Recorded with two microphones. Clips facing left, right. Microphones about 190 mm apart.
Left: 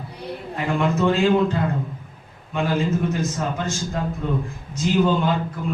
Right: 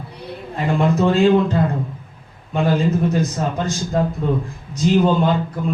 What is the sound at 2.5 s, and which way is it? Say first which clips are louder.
Speech: right 4 dB; 35° right (ahead or behind).